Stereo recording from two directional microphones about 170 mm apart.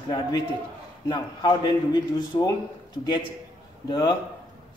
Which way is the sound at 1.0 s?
25° left (ahead or behind).